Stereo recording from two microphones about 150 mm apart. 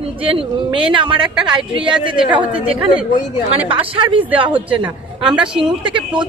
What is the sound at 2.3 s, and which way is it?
A man's voice, 35° right (ahead or behind).